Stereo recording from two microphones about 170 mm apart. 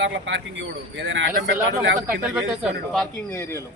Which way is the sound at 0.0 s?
90° right.